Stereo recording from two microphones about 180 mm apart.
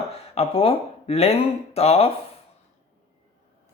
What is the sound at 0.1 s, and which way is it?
Speech, 30° left (ahead or behind).